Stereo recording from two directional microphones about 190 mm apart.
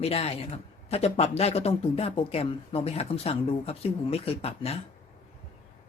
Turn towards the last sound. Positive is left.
turn(degrees=30)  # may be behind; listen again after turning